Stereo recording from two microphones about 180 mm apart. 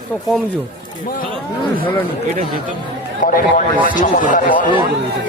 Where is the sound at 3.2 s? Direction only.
50° left (ahead or behind).